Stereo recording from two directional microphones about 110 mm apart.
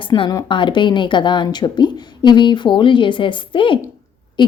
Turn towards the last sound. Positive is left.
turn(degrees=50)  # may be behind; listen again after turning